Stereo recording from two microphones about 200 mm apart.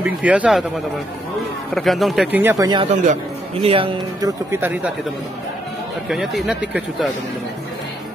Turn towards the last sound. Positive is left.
turn(degrees=-5)  # may be behind; listen again after turning